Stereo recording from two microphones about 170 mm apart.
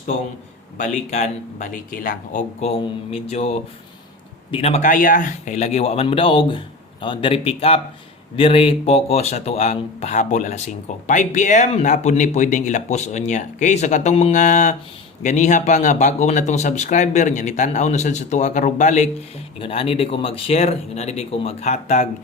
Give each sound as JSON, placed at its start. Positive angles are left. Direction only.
{"t": 0.8, "sound": "speech", "side_deg": 45}